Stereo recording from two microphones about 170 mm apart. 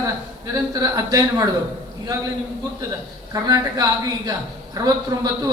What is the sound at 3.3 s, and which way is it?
A woman's voice, 20° right (ahead or behind).